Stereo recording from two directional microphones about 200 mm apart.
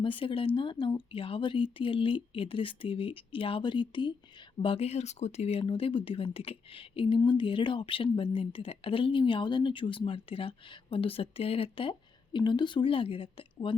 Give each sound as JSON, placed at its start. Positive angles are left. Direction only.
{"t": 0.0, "sound": "speech", "side_deg": 25}